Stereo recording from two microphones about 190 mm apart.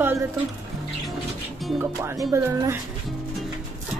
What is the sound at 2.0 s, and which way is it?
Speech, 15° right (ahead or behind).